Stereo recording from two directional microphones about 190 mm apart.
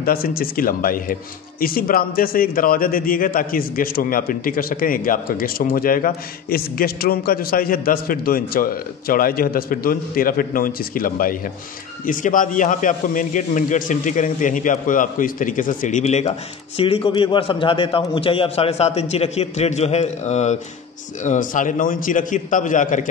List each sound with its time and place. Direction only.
0.0 s a man's voice: 50° left (ahead or behind)